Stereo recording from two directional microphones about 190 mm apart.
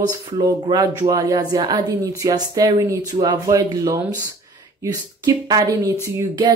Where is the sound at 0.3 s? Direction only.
20° right (ahead or behind).